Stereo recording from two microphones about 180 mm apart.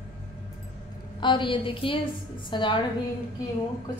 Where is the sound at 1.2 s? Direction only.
25° left (ahead or behind).